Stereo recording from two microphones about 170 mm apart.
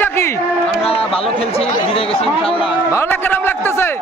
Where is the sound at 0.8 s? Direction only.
35° left (ahead or behind).